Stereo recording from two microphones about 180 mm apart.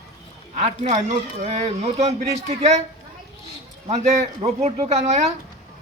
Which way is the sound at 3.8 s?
35° right (ahead or behind).